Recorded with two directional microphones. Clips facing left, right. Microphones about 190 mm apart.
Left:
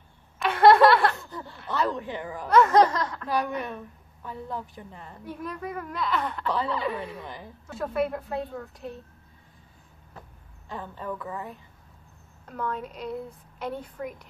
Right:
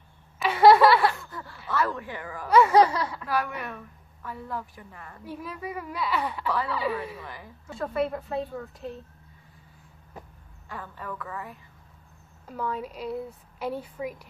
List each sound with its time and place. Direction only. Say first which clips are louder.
0.4 s a sound: even; 5° right (ahead or behind)
1.2 s snicker: left 2 dB; 20° left (ahead or behind)
1.7 s a woman's voice: left 1 dB; 20° left (ahead or behind)
2.4 s a woman's voice: even; 5° right (ahead or behind)
3.3 s a woman's voice: left 2 dB; 20° left (ahead or behind)
5.2 s a woman's voice: left 1 dB; 5° right (ahead or behind)
10.7 s a woman's voice: left 3 dB; 25° left (ahead or behind)
12.4 s a woman's voice: even; 5° right (ahead or behind)